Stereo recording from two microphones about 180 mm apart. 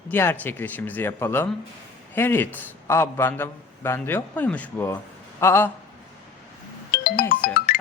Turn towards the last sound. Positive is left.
turn(degrees=55)  # may be behind; listen again after turning